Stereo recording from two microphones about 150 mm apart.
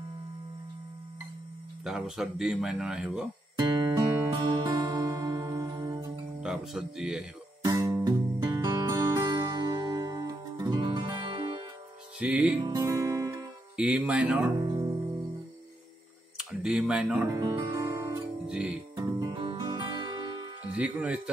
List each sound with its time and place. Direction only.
1.9 s speech: centre (ahead or behind)
3.6 s music: 30° right (ahead or behind)
6.4 s speech: 5° right (ahead or behind)
7.6 s music: 25° right (ahead or behind)
12.2 s music: 10° right (ahead or behind)
12.5 s music: 25° right (ahead or behind)
13.7 s music: 5° right (ahead or behind)
16.3 s speech: 5° right (ahead or behind)
17.3 s music: 25° right (ahead or behind)
18.5 s music: 5° right (ahead or behind)
18.9 s music: 30° right (ahead or behind)
20.6 s speech: 10° right (ahead or behind)